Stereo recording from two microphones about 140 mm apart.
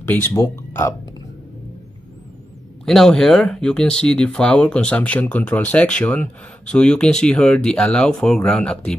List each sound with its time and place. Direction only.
0.0 s speech: 20° left (ahead or behind)
2.8 s speech: 5° left (ahead or behind)